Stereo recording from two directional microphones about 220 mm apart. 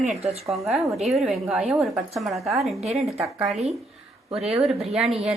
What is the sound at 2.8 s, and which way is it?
Speech, 30° right (ahead or behind).